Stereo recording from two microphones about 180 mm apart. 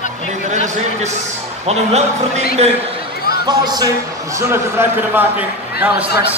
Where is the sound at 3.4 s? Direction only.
25° right (ahead or behind).